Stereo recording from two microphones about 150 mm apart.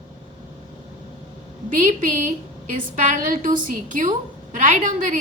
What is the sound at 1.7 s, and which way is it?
A woman's voice, 55° right (ahead or behind).